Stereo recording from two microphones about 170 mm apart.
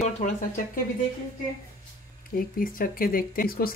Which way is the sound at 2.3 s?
55° left (ahead or behind).